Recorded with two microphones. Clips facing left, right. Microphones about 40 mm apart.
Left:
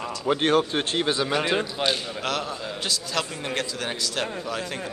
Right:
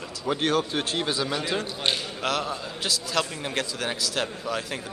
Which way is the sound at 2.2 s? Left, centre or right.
Centre.